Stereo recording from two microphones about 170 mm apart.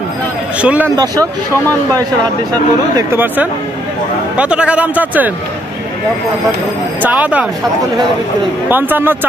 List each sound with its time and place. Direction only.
0.6 s speech: 5° right (ahead or behind)
0.9 s speech: 20° right (ahead or behind)
3.0 s speech: 15° right (ahead or behind)
7.0 s speech: 10° right (ahead or behind)
8.6 s speech: 10° right (ahead or behind)